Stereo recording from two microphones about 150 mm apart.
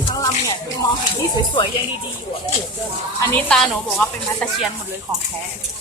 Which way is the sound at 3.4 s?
5° left (ahead or behind).